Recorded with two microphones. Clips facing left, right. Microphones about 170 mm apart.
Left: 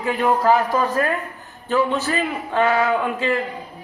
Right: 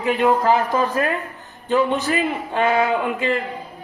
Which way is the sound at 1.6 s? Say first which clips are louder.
Right 1 dB; 20° right (ahead or behind).